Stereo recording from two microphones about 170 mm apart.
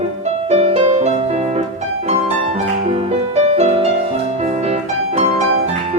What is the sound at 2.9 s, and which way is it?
Music, 35° right (ahead or behind).